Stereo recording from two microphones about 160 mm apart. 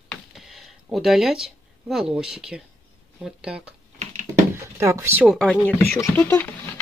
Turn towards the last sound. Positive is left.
turn(degrees=10)  # may be behind; listen again after turning